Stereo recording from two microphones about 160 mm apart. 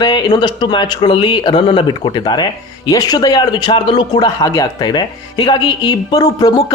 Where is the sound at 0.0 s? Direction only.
30° left (ahead or behind).